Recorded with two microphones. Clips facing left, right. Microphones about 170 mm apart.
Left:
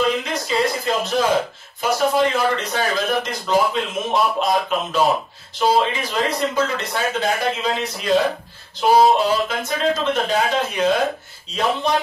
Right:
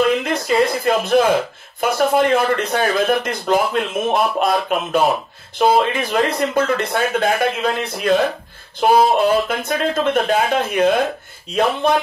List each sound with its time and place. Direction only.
0.0 s a man's voice: 55° right (ahead or behind)